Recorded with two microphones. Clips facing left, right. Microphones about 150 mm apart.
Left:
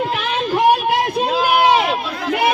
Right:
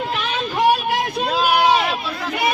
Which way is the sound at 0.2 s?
55° left (ahead or behind).